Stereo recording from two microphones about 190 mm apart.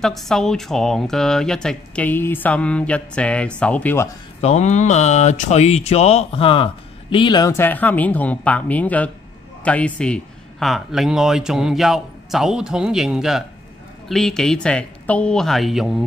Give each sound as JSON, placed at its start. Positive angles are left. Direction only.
{"t": 0.0, "sound": "speech", "side_deg": 0}
{"t": 4.4, "sound": "speech", "side_deg": 35}